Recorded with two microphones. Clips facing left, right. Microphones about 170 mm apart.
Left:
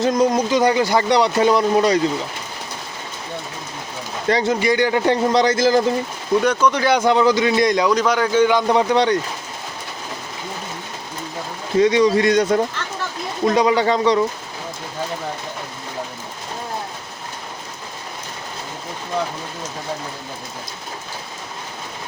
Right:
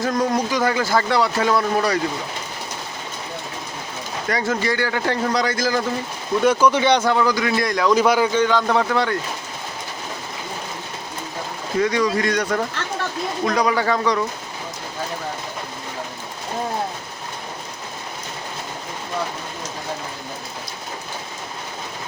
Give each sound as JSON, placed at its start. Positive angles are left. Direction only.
{"t": 0.0, "sound": "a man's voice", "side_deg": 20}
{"t": 4.3, "sound": "a man's voice", "side_deg": 25}
{"t": 6.4, "sound": "speech", "side_deg": -5}
{"t": 7.0, "sound": "a man's voice", "side_deg": 20}
{"t": 7.9, "sound": "a man's voice", "side_deg": -5}
{"t": 8.3, "sound": "speech", "side_deg": 15}
{"t": 11.8, "sound": "a man's voice", "side_deg": 20}